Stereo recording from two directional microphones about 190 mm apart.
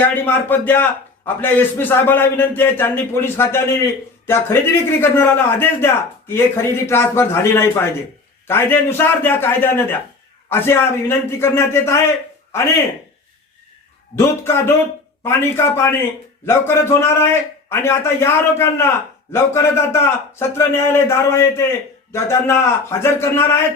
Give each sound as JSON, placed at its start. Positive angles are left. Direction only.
{"t": 0.0, "sound": "a man's voice", "side_deg": 10}
{"t": 14.2, "sound": "a man's voice", "side_deg": 15}